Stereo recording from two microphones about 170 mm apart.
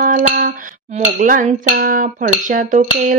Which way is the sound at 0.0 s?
55° right (ahead or behind).